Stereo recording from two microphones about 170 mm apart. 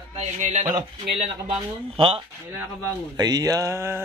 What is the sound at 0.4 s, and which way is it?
Speech, 45° right (ahead or behind).